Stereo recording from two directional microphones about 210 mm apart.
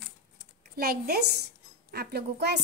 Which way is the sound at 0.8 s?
45° right (ahead or behind).